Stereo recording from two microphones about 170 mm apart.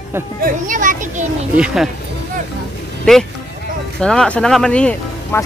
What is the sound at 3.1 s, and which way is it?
Speech, 5° left (ahead or behind).